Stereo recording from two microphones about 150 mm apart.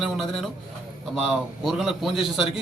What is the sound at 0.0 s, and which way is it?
A man's voice, centre (ahead or behind).